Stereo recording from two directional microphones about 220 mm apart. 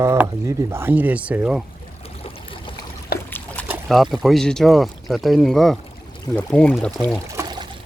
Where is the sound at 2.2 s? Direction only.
25° left (ahead or behind).